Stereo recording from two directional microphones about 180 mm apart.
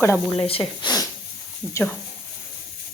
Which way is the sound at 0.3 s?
30° left (ahead or behind).